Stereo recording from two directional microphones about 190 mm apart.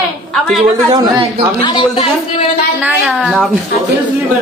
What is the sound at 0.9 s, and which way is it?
Speech, 25° right (ahead or behind).